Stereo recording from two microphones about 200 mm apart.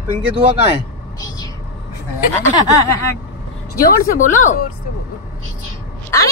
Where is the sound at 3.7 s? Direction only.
45° left (ahead or behind).